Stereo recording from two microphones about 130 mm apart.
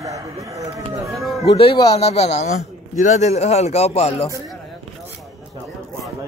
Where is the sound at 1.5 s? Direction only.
45° left (ahead or behind).